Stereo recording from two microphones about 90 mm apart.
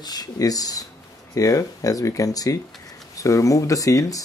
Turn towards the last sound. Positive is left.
turn(degrees=40)  # may be behind; listen again after turning